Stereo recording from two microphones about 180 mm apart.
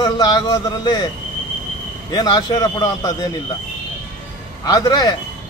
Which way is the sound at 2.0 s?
25° left (ahead or behind).